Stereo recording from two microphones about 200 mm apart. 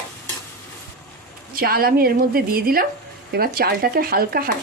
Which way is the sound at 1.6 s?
50° right (ahead or behind).